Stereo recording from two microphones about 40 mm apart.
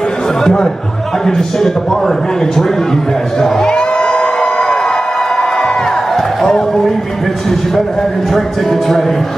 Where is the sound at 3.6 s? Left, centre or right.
Left.